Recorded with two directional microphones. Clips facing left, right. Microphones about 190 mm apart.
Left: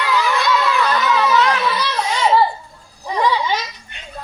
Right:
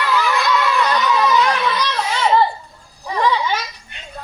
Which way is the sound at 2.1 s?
10° left (ahead or behind).